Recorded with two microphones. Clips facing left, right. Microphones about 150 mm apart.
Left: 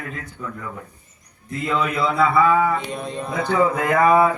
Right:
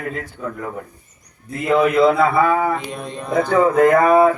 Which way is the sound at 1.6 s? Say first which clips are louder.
Right 8 dB; 55° right (ahead or behind).